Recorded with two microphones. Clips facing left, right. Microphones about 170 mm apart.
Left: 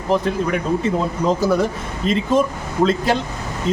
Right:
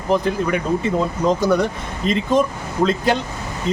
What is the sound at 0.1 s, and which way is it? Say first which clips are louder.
Speech: even; centre (ahead or behind).